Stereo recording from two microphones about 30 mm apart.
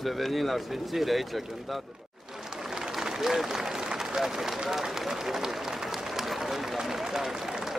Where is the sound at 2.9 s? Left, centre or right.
Centre.